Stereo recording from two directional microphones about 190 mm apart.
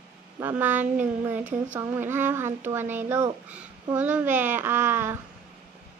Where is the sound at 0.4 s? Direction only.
10° right (ahead or behind).